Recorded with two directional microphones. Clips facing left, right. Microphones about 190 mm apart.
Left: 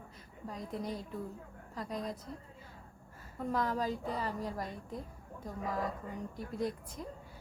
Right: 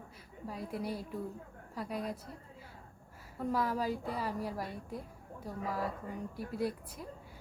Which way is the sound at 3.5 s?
10° right (ahead or behind).